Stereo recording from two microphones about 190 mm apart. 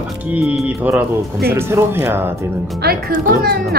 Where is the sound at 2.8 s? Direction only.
50° right (ahead or behind).